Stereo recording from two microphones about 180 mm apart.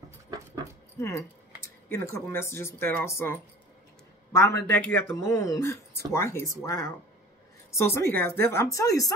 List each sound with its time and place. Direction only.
0.9 s speech: 15° left (ahead or behind)